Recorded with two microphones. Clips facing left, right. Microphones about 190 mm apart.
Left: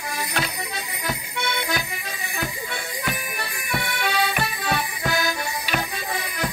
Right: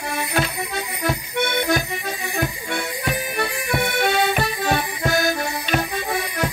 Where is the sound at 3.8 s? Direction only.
50° right (ahead or behind).